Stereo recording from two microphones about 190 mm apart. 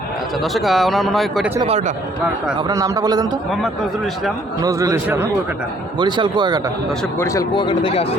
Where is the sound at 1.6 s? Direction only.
35° right (ahead or behind).